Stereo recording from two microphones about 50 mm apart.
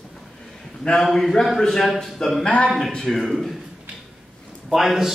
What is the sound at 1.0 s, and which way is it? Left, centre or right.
A man's voice, centre.